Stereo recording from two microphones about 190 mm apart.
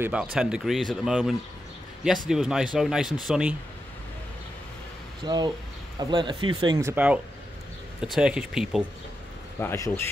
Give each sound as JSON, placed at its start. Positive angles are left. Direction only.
{"t": 0.0, "sound": "speech", "side_deg": -5}
{"t": 5.2, "sound": "speech", "side_deg": -20}
{"t": 9.6, "sound": "speech", "side_deg": 15}